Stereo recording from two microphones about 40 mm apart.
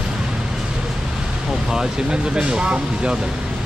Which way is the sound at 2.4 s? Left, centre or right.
Right.